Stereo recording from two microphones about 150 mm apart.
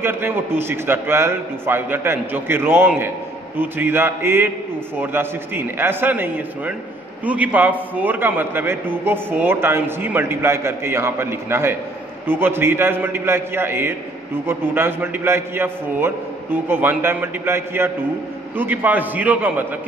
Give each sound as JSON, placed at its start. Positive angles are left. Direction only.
{"t": 0.0, "sound": "a man's voice", "side_deg": -15}